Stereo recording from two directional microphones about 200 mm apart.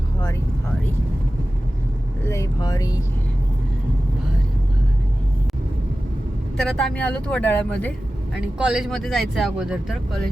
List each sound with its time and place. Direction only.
2.2 s speech: 15° left (ahead or behind)
6.6 s speech: centre (ahead or behind)
8.5 s speech: 5° right (ahead or behind)